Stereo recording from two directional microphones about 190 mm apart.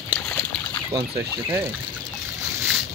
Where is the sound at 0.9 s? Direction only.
15° right (ahead or behind).